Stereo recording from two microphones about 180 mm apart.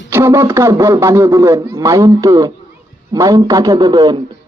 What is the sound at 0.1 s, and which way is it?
A man's voice, 15° right (ahead or behind).